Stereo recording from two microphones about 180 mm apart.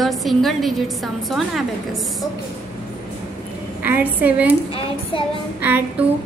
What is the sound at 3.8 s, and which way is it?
Speech, 10° right (ahead or behind).